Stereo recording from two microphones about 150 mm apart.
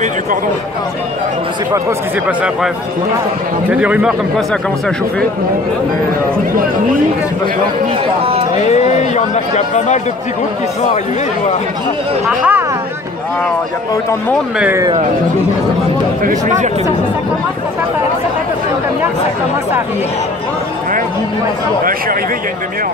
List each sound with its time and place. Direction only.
2.2 s speech: 5° right (ahead or behind)
3.7 s speech: 10° right (ahead or behind)
8.6 s speech: 50° left (ahead or behind)
12.3 s speech: 10° right (ahead or behind)
16.3 s speech: 55° right (ahead or behind)